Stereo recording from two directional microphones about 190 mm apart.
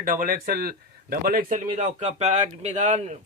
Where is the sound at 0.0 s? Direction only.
50° right (ahead or behind).